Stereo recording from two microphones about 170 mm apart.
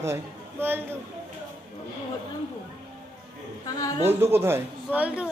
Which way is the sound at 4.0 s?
15° right (ahead or behind).